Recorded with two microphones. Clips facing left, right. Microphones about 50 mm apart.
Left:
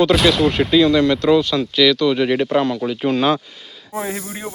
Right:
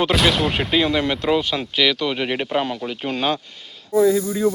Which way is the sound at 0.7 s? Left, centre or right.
Centre.